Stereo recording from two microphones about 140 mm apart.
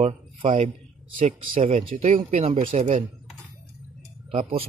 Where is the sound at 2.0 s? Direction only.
45° right (ahead or behind).